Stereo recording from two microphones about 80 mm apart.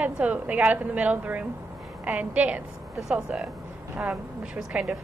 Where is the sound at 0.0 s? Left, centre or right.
Centre.